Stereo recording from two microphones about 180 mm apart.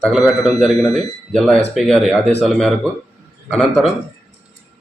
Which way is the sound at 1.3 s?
5° left (ahead or behind).